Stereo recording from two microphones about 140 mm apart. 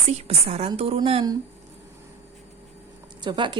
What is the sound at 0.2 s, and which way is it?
Speech, 50° right (ahead or behind).